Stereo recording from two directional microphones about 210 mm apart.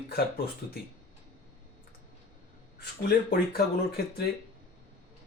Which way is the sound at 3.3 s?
50° left (ahead or behind).